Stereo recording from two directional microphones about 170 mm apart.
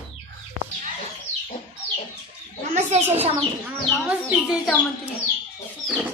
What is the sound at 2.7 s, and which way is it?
Bird, 40° right (ahead or behind).